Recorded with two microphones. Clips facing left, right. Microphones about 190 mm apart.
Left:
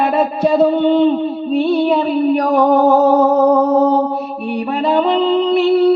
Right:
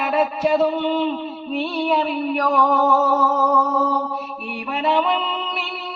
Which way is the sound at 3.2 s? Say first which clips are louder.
Left 8 dB; 30° left (ahead or behind).